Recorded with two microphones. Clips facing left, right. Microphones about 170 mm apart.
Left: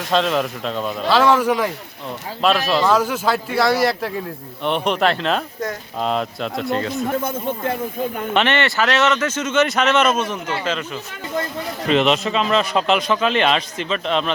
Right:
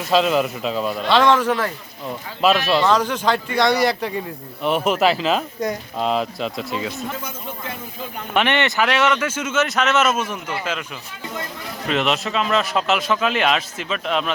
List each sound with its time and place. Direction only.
0.0 s a man's voice: 5° right (ahead or behind)
7.1 s speech: 55° left (ahead or behind)
8.4 s speech: 15° right (ahead or behind)
11.9 s a man's voice: centre (ahead or behind)